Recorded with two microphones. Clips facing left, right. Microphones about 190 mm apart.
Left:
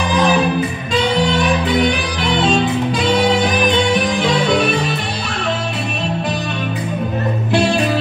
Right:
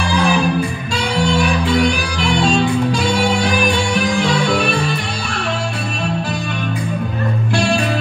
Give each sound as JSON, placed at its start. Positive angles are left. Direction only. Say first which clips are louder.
{"t": 0.2, "sound": "music", "louder": "left 2 dB", "side_deg": 20}
{"t": 3.0, "sound": "music", "louder": "left 2 dB", "side_deg": 20}